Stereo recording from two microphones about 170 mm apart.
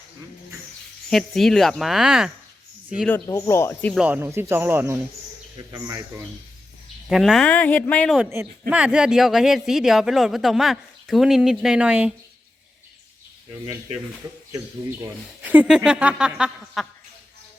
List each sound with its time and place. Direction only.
1.1 s speech: centre (ahead or behind)
3.2 s speech: 15° left (ahead or behind)
3.9 s a man's voice: 10° right (ahead or behind)
7.1 s speech: centre (ahead or behind)
8.2 s speech: 15° right (ahead or behind)
15.0 s speech: 10° right (ahead or behind)